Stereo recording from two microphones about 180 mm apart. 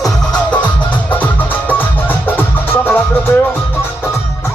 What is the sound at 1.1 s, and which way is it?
Music, 10° left (ahead or behind).